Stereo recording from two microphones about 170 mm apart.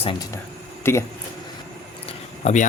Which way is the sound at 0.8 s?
15° left (ahead or behind).